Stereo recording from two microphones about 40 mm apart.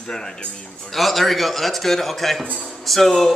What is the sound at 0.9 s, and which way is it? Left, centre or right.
A man's voice, centre.